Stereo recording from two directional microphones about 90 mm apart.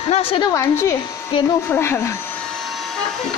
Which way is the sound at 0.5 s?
35° left (ahead or behind).